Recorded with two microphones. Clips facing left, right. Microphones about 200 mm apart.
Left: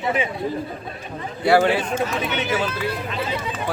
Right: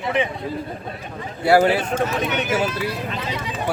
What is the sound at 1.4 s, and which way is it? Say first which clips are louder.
Speech: right 1 dB; 10° right (ahead or behind).